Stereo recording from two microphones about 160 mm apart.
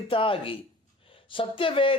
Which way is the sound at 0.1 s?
35° left (ahead or behind).